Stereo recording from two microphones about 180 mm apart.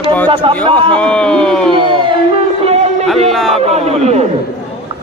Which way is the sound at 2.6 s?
35° right (ahead or behind).